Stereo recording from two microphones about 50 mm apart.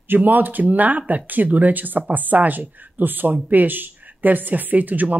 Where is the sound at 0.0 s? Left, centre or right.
Right.